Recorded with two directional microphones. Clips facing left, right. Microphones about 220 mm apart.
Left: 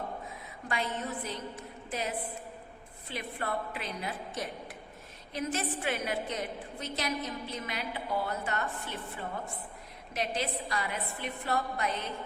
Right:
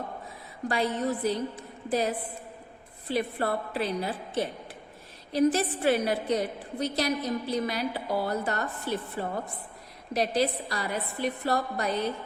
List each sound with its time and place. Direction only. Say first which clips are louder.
0.7 s a woman's voice: right 7 dB; 35° right (ahead or behind)